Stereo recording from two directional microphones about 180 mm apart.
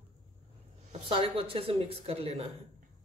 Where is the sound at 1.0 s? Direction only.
30° right (ahead or behind).